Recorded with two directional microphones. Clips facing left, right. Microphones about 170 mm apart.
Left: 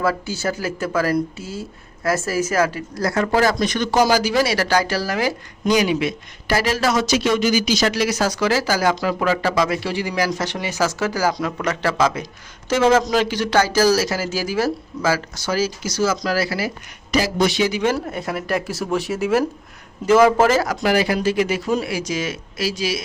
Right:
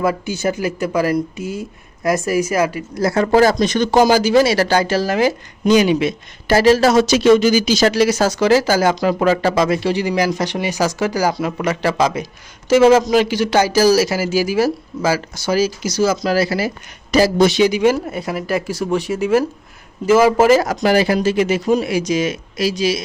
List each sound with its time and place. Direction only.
0.0 s speech: 20° right (ahead or behind)
3.0 s speech: 25° right (ahead or behind)
17.7 s speech: 15° right (ahead or behind)
18.0 s speech: 5° right (ahead or behind)
20.6 s speech: 30° right (ahead or behind)